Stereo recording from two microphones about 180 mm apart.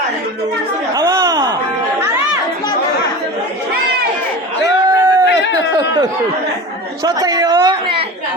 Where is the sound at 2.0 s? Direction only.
15° right (ahead or behind).